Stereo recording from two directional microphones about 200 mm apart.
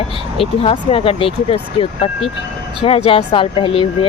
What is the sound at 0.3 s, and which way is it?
Speech, 30° left (ahead or behind).